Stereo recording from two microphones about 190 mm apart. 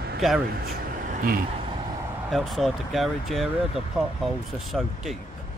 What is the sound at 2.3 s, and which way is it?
Speech, centre (ahead or behind).